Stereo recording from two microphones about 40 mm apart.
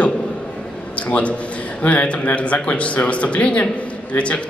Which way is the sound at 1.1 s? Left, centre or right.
Left.